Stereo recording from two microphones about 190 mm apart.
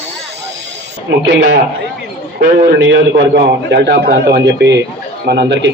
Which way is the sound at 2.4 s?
70° right (ahead or behind).